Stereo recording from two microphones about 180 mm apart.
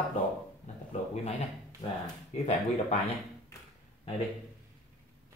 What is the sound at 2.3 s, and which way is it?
Speech, 40° left (ahead or behind).